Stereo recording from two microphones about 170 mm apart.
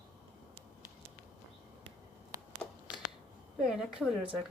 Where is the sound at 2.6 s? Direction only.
10° left (ahead or behind).